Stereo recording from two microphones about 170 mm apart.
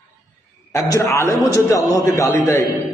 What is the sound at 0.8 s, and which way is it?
A man's voice, 15° left (ahead or behind).